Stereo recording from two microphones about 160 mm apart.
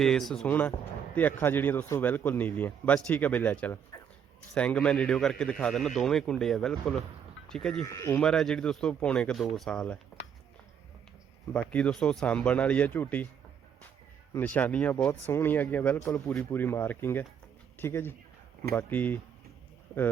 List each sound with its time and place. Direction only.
0.0 s a man's voice: centre (ahead or behind)
7.9 s a man's voice: 15° left (ahead or behind)
8.2 s a man's voice: 5° left (ahead or behind)
11.5 s a man's voice: 5° left (ahead or behind)
14.3 s a man's voice: 10° left (ahead or behind)
16.5 s a man's voice: 15° left (ahead or behind)